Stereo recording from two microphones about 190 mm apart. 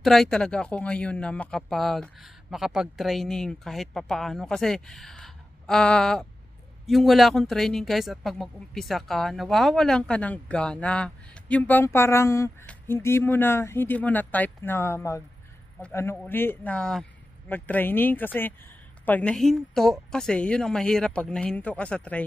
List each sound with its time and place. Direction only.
0.0 s speech: centre (ahead or behind)